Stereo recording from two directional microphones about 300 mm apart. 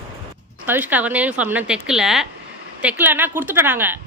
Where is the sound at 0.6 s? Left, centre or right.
Centre.